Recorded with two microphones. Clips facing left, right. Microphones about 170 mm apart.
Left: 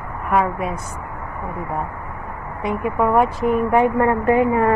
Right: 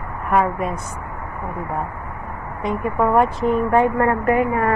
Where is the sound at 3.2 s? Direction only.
10° left (ahead or behind).